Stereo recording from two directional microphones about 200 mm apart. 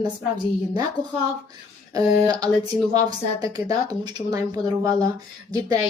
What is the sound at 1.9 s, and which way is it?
A woman's voice, 20° right (ahead or behind).